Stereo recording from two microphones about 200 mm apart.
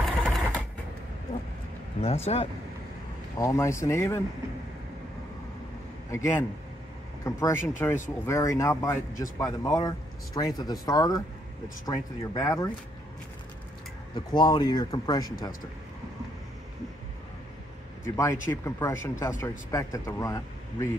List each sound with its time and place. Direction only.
0.0 s mechanisms: centre (ahead or behind)
2.0 s speech: 30° left (ahead or behind)
3.3 s speech: 15° left (ahead or behind)
6.1 s speech: 15° left (ahead or behind)
14.1 s speech: 20° left (ahead or behind)
18.0 s speech: 15° left (ahead or behind)